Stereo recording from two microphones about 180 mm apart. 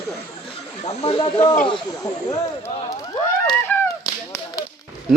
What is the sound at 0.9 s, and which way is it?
Speech, 30° left (ahead or behind).